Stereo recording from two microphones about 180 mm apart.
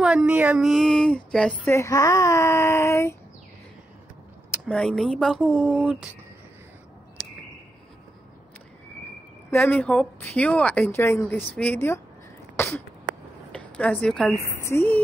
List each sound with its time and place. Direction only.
0.0 s speech: 5° right (ahead or behind); by 3.2 s 15° left (ahead or behind)
4.6 s speech: 5° left (ahead or behind)
9.5 s speech: 10° left (ahead or behind)
12.5 s sneeze: 10° left (ahead or behind)
13.5 s a sound: 5° left (ahead or behind)
14.4 s speech: 15° left (ahead or behind)